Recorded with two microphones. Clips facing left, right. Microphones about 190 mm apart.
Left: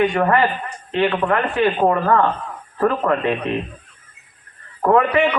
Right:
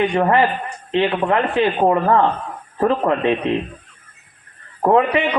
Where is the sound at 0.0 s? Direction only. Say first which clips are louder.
Right 1 dB; 25° right (ahead or behind).